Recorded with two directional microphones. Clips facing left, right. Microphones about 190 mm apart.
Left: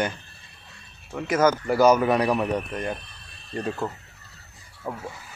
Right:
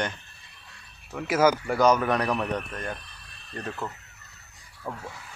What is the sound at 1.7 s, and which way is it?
Speech, 5° left (ahead or behind).